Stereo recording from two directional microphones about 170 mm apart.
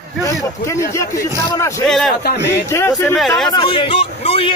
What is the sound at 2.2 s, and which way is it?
Speech, 70° left (ahead or behind).